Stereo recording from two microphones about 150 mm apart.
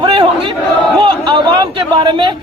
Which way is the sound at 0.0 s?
35° right (ahead or behind).